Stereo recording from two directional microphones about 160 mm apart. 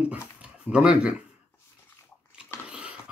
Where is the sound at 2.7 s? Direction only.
5° right (ahead or behind).